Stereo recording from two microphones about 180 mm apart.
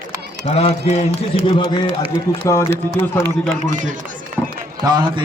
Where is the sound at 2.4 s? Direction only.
15° left (ahead or behind).